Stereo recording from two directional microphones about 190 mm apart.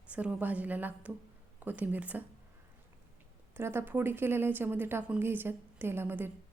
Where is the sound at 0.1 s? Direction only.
5° right (ahead or behind).